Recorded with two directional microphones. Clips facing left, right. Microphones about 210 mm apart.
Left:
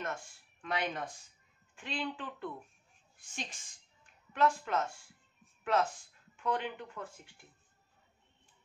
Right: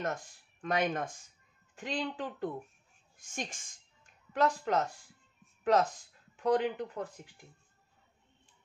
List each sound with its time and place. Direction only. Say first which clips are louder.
0.0 s speech: right 4 dB; 40° right (ahead or behind)